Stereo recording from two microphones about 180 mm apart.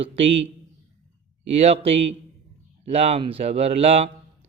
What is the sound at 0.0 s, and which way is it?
Speech, 35° right (ahead or behind).